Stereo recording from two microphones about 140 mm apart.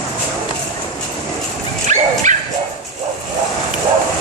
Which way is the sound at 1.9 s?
60° right (ahead or behind).